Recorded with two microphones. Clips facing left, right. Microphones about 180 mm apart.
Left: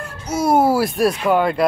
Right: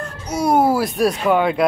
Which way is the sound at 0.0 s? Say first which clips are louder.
Even; 5° left (ahead or behind).